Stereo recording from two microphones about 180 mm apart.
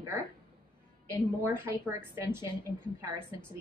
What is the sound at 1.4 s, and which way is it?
Speech, 15° right (ahead or behind).